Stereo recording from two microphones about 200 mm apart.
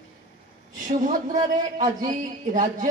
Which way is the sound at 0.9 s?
40° right (ahead or behind).